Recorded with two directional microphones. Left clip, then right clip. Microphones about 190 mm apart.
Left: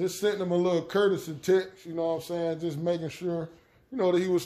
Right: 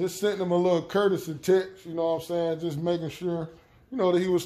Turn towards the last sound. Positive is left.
turn(degrees=-5)  # may be behind; listen again after turning